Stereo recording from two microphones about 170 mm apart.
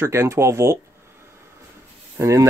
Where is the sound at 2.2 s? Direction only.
20° right (ahead or behind).